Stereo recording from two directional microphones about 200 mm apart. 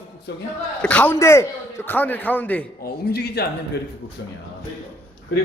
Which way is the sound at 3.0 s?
50° left (ahead or behind).